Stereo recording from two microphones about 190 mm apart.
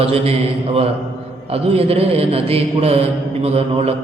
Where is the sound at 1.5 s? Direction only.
30° right (ahead or behind).